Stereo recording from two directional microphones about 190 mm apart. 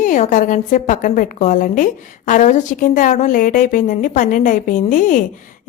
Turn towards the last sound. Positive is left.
turn(degrees=45)  # may be behind; listen again after turning